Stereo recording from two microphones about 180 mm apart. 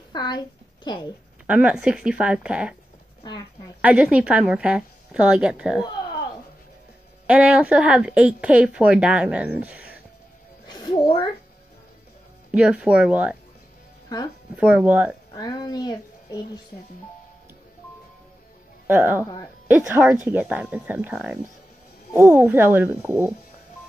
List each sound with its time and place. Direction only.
0.1 s a woman's voice: 25° left (ahead or behind)
1.5 s a woman's voice: 5° right (ahead or behind)
3.8 s a woman's voice: 5° right (ahead or behind)
7.2 s speech: 5° right (ahead or behind)
10.7 s a sound: 25° left (ahead or behind)
12.4 s speech: 5° right (ahead or behind)
14.0 s speech: 20° left (ahead or behind)
14.6 s speech: 5° right (ahead or behind)
15.3 s speech: 20° left (ahead or behind)
18.9 s speech: 10° right (ahead or behind)